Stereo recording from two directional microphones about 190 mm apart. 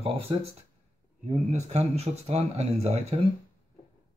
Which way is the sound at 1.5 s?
35° right (ahead or behind).